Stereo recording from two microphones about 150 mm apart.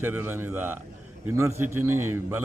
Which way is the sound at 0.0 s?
15° right (ahead or behind).